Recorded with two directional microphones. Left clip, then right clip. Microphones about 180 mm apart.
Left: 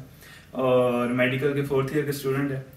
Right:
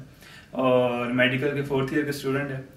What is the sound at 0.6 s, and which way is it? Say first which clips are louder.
Speech: even; 15° right (ahead or behind).